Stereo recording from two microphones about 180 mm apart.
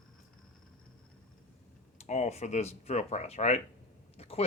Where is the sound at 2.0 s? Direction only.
40° left (ahead or behind).